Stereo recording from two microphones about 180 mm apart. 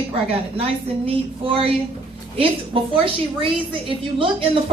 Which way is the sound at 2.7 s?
30° right (ahead or behind).